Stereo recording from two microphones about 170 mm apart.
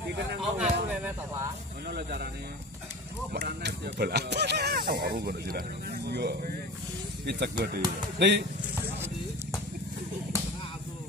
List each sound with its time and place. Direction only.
0.4 s speech: 5° right (ahead or behind)
1.9 s speech: 65° right (ahead or behind)
3.3 s speech: 75° right (ahead or behind)
8.2 s speech: 90° right